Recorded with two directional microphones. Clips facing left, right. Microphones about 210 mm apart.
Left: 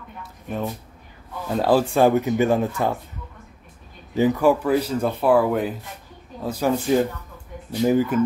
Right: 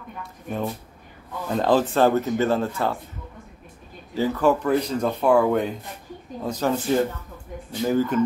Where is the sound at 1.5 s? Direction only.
5° left (ahead or behind).